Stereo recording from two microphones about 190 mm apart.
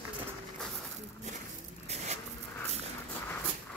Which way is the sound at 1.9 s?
35° right (ahead or behind).